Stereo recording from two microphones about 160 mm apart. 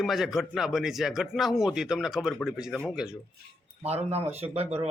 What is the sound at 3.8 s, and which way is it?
Speech, 40° right (ahead or behind).